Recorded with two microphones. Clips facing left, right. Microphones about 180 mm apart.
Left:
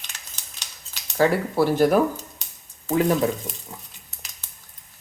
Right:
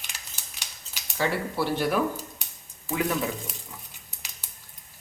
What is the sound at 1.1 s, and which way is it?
Speech, 45° left (ahead or behind).